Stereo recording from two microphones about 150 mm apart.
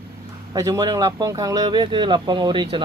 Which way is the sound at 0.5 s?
25° right (ahead or behind).